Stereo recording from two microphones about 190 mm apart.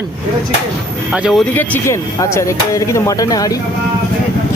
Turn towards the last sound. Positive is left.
turn(degrees=20)  # may be behind; listen again after turning